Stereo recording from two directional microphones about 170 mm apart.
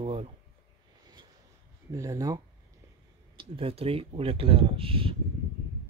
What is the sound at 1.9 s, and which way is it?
Speech, 20° right (ahead or behind).